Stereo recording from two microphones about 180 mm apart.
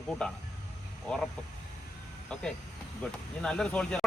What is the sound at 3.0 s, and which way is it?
Speech, 5° left (ahead or behind).